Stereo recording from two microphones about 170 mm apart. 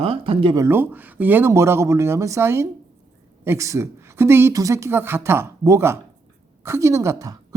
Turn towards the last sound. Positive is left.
turn(degrees=-20)  # may be behind; listen again after turning